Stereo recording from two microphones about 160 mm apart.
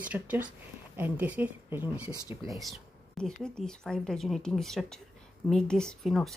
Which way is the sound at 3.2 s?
5° left (ahead or behind).